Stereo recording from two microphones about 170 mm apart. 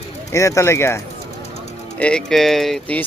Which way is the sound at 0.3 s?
20° left (ahead or behind).